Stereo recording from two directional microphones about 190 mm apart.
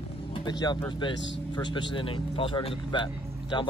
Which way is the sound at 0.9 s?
25° left (ahead or behind).